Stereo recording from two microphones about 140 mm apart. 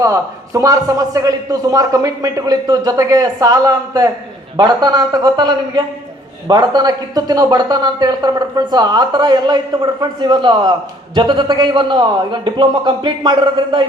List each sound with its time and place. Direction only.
0.0 s a man's voice: 25° right (ahead or behind)